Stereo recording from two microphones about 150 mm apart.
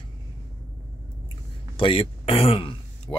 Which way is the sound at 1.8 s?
35° left (ahead or behind).